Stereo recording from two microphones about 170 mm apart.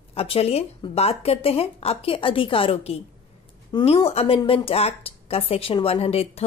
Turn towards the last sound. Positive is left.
turn(degrees=35)  # may be behind; listen again after turning